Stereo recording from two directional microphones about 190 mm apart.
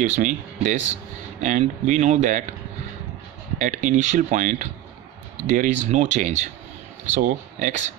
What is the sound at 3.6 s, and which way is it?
Speech, 40° right (ahead or behind).